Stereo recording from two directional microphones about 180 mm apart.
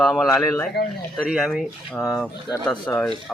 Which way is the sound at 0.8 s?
65° left (ahead or behind).